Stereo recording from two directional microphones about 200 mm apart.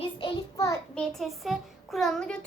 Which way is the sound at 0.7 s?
5° left (ahead or behind).